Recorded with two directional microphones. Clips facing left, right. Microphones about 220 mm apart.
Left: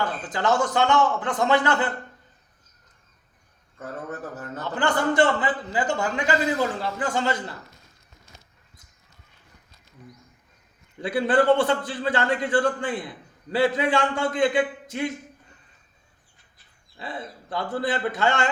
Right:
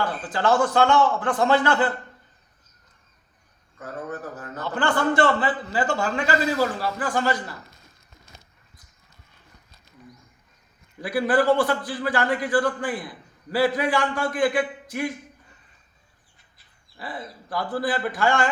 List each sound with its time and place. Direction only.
0.3 s a man's voice: 20° left (ahead or behind)
4.7 s a man's voice: 20° left (ahead or behind)
11.0 s a man's voice: 25° left (ahead or behind)
17.0 s a man's voice: 25° left (ahead or behind)